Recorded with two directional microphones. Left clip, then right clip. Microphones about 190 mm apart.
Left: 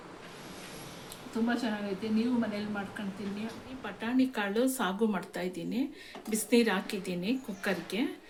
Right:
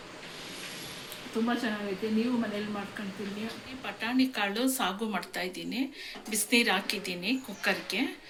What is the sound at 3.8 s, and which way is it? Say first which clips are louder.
Speech: right 2 dB; 45° left (ahead or behind).